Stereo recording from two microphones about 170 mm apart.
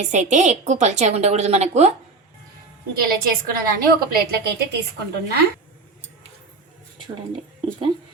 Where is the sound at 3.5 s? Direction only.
60° right (ahead or behind).